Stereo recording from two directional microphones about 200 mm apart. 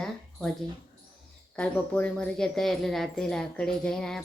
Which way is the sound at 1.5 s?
5° left (ahead or behind).